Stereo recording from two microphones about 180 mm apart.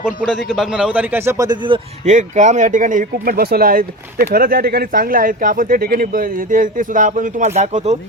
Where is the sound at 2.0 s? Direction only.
40° right (ahead or behind).